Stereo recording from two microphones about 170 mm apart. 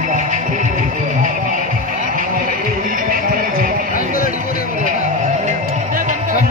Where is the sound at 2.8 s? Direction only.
55° right (ahead or behind).